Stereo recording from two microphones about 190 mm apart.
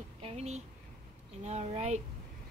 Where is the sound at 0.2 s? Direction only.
35° right (ahead or behind).